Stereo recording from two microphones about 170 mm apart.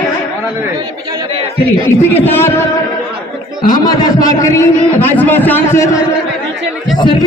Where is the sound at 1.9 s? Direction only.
15° left (ahead or behind).